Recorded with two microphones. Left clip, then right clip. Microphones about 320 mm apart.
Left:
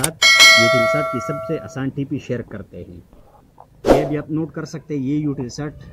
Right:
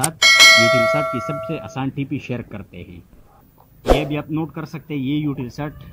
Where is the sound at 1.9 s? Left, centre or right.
Left.